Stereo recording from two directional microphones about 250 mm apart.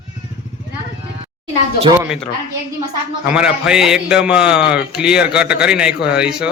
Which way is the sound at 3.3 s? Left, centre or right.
Centre.